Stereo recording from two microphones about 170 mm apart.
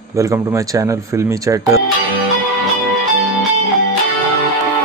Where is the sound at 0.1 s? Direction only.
15° right (ahead or behind).